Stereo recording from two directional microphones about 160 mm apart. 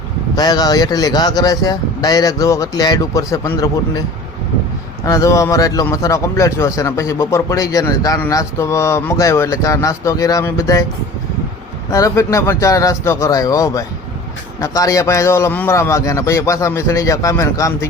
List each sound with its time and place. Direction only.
0.3 s speech: 25° left (ahead or behind)
5.0 s speech: 20° left (ahead or behind)
11.9 s speech: 20° left (ahead or behind)